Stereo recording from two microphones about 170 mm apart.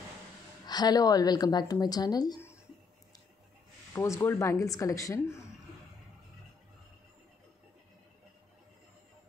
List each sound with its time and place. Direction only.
0.7 s a woman's voice: 25° left (ahead or behind)
3.9 s speech: 15° left (ahead or behind)